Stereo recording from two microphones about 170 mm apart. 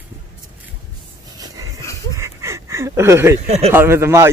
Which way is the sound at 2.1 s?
15° right (ahead or behind).